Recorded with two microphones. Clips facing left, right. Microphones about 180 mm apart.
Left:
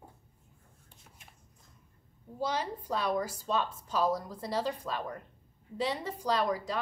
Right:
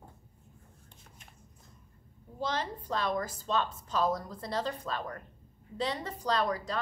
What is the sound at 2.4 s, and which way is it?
A woman's voice, 10° left (ahead or behind).